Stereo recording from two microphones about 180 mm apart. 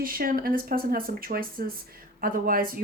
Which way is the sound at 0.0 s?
55° right (ahead or behind).